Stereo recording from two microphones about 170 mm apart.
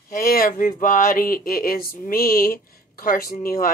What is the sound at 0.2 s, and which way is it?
Speech, 60° left (ahead or behind).